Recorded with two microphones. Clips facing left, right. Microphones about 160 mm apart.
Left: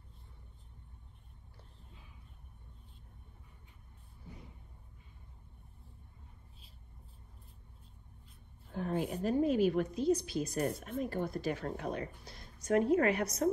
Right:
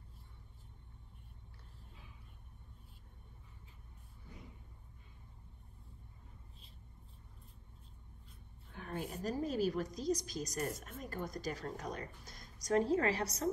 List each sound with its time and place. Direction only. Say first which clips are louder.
8.7 s speech: left 8 dB; 55° left (ahead or behind)
9.2 s a woman's voice: left 6 dB; 40° right (ahead or behind)